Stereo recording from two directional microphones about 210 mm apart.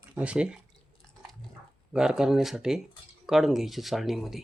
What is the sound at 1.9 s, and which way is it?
Speech, 5° right (ahead or behind).